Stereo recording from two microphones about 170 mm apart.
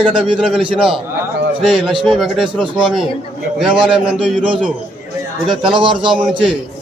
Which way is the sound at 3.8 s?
5° right (ahead or behind).